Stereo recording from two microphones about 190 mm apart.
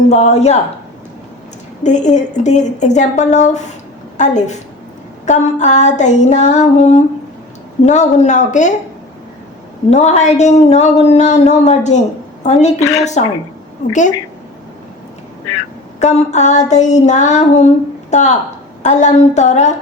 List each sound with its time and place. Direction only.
0.1 s speech: 35° left (ahead or behind)
1.8 s speech: 40° left (ahead or behind)
9.9 s speech: 35° left (ahead or behind)
16.0 s speech: 35° left (ahead or behind)